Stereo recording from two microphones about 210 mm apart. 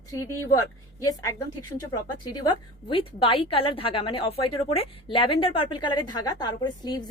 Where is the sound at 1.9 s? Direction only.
20° left (ahead or behind).